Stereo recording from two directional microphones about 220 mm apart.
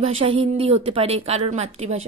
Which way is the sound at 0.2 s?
25° right (ahead or behind).